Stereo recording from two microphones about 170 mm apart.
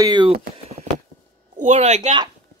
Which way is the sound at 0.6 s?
40° right (ahead or behind).